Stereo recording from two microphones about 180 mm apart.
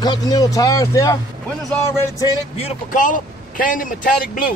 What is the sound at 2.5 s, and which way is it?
Speech, 40° left (ahead or behind).